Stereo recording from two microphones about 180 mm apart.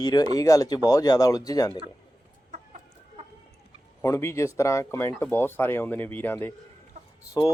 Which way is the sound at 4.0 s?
15° left (ahead or behind).